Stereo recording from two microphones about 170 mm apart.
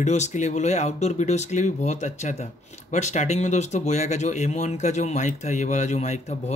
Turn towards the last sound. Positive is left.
turn(degrees=40)  # may be behind; listen again after turning